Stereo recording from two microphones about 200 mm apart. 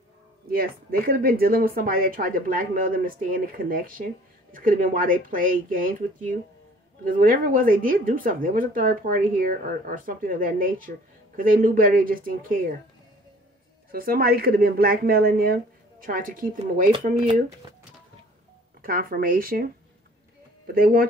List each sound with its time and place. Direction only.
0.5 s speech: 45° right (ahead or behind)
13.9 s speech: 50° right (ahead or behind)
18.8 s speech: 45° right (ahead or behind)
20.7 s speech: 45° right (ahead or behind)